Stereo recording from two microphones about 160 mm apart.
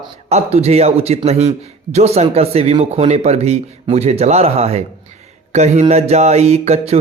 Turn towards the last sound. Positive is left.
turn(degrees=-40)  # may be behind; listen again after turning